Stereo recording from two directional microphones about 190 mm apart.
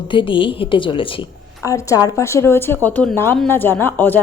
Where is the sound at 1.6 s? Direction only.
15° left (ahead or behind).